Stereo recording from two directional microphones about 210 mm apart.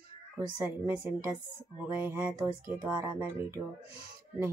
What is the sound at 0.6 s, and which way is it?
Speech, 10° right (ahead or behind).